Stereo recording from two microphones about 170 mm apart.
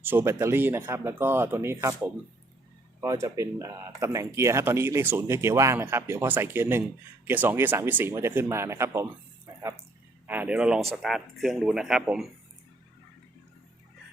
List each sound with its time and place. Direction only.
0.0 s speech: 10° right (ahead or behind)
10.2 s speech: 10° right (ahead or behind)